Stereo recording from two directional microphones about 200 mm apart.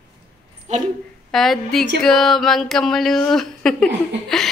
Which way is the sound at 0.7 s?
35° right (ahead or behind).